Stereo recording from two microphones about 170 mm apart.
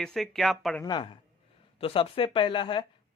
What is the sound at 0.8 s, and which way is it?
A man's voice, 25° left (ahead or behind).